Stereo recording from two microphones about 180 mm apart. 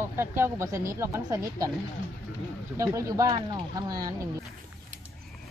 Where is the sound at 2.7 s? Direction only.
20° right (ahead or behind).